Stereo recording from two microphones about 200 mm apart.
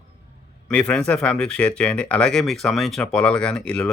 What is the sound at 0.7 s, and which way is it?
Speech, 5° left (ahead or behind).